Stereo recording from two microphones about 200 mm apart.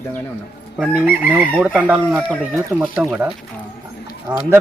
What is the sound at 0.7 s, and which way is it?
Chicken, centre (ahead or behind).